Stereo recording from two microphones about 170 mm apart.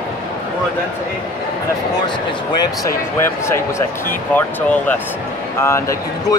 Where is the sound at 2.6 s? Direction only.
20° left (ahead or behind).